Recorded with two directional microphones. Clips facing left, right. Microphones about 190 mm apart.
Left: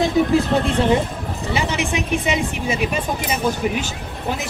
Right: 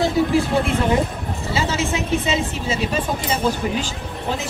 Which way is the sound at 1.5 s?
15° left (ahead or behind).